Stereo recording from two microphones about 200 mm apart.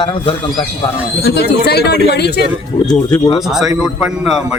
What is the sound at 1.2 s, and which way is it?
Speech, 55° left (ahead or behind).